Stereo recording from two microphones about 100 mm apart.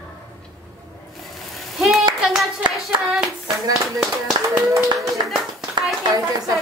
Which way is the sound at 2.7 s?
Centre (ahead or behind).